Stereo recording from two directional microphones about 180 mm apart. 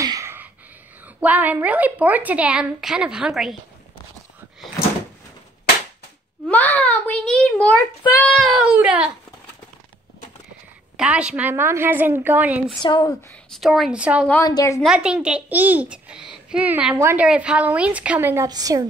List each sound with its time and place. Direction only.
0.0 s gasp: 15° right (ahead or behind)
1.0 s a woman's voice: 10° right (ahead or behind)
6.4 s a child's voice: 10° left (ahead or behind)
11.0 s a woman's voice: 5° right (ahead or behind)
12.8 s a woman's voice: 25° left (ahead or behind)
13.5 s a child's voice: centre (ahead or behind)
14.4 s a woman's voice: 20° left (ahead or behind)
14.8 s a child's voice: 5° right (ahead or behind); by 18.9 s 20° right (ahead or behind)